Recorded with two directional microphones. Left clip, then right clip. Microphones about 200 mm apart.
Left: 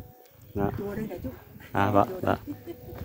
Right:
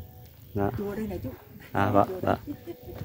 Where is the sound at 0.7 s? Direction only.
10° right (ahead or behind).